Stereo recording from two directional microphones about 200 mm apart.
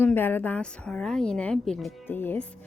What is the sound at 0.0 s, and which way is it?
A woman's voice, 10° left (ahead or behind).